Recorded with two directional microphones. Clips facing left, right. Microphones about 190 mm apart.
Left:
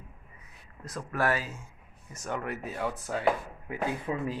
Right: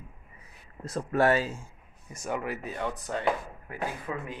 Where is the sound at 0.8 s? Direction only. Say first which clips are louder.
Right 5 dB; 25° right (ahead or behind).